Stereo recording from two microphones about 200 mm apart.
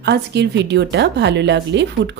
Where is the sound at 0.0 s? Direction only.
55° right (ahead or behind).